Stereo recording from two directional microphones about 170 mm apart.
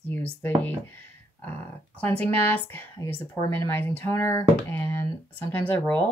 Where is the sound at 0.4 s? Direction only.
10° left (ahead or behind).